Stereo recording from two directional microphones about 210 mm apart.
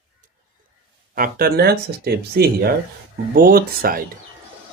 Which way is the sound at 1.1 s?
45° right (ahead or behind).